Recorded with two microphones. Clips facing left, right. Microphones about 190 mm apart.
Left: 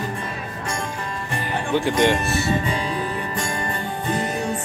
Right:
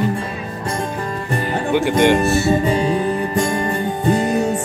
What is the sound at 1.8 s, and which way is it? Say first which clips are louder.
Speech: right 3 dB; 65° right (ahead or behind).